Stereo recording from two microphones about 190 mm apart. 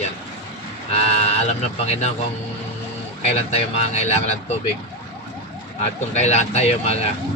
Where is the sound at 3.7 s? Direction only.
35° left (ahead or behind).